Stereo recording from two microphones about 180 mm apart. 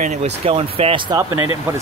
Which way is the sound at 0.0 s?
40° right (ahead or behind).